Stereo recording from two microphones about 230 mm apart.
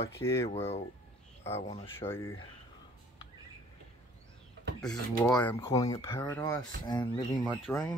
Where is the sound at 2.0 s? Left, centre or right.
Centre.